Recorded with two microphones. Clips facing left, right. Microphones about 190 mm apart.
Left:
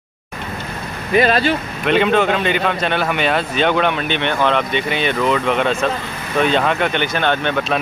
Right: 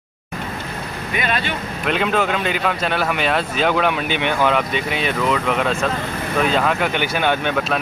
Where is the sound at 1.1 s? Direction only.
35° left (ahead or behind).